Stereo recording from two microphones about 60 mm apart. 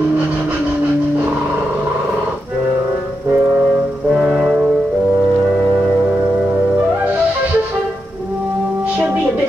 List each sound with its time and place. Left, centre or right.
3.3 s music: right
4.1 s brass instrument: centre